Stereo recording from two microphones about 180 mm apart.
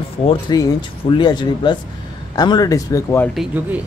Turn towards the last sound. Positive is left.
turn(degrees=-10)  # may be behind; listen again after turning